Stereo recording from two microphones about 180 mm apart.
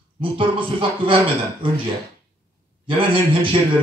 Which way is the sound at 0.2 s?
30° right (ahead or behind).